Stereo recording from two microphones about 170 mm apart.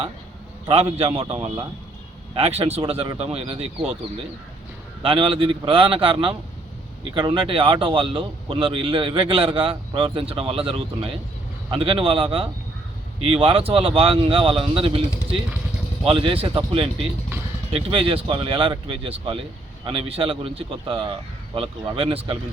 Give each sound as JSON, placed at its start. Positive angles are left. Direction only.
{"t": 0.7, "sound": "speech", "side_deg": -35}
{"t": 5.0, "sound": "speech", "side_deg": -30}
{"t": 16.0, "sound": "speech", "side_deg": -30}